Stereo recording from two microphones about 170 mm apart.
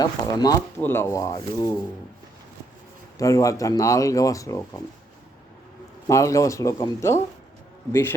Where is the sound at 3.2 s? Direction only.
20° left (ahead or behind).